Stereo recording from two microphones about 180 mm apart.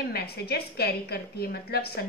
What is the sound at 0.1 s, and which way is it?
A woman's voice, 60° left (ahead or behind).